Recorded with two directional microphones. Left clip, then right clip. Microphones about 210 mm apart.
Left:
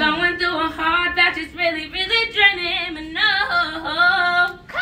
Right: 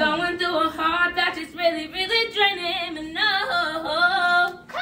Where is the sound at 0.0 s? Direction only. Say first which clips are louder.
Left 4 dB; 5° right (ahead or behind).